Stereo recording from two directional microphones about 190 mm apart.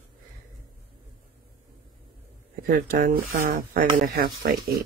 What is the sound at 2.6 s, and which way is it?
Speech, 50° right (ahead or behind).